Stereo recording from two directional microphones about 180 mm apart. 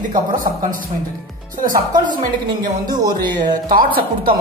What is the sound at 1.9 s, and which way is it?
Speech, 25° right (ahead or behind).